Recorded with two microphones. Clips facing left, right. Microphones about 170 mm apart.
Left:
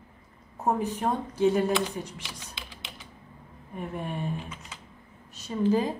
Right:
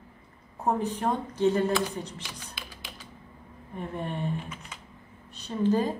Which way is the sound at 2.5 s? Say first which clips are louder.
Even; 25° left (ahead or behind).